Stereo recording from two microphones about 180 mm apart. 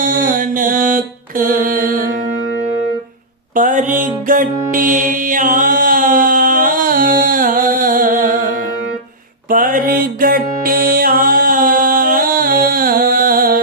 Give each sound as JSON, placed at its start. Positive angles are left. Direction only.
{"t": 0.0, "sound": "mantra", "side_deg": -50}
{"t": 3.5, "sound": "music", "side_deg": -45}
{"t": 9.5, "sound": "music", "side_deg": -50}